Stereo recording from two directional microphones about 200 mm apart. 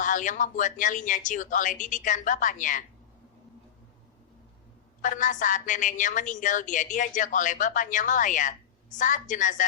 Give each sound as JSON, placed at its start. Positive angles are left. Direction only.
{"t": 0.0, "sound": "a woman's voice", "side_deg": 40}
{"t": 5.0, "sound": "a woman's voice", "side_deg": 40}